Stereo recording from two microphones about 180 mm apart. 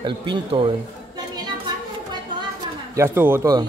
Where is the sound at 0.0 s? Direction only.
25° right (ahead or behind).